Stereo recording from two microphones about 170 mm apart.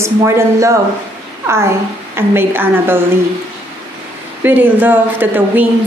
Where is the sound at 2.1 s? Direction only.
15° right (ahead or behind).